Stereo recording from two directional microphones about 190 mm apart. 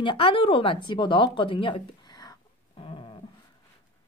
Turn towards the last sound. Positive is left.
turn(degrees=25)  # may be behind; listen again after turning